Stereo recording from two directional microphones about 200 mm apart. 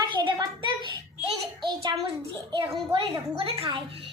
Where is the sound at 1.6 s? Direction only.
20° right (ahead or behind).